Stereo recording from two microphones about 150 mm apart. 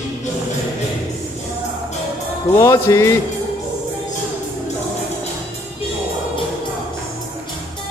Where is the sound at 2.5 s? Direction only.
20° left (ahead or behind).